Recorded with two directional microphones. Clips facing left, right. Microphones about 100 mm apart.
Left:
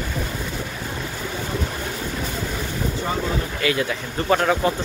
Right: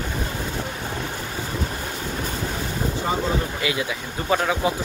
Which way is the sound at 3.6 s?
15° right (ahead or behind).